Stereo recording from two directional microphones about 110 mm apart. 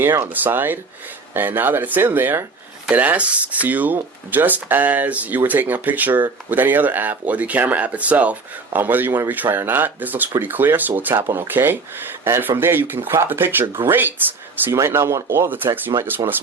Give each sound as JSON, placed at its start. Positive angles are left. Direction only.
{"t": 0.0, "sound": "speech", "side_deg": -20}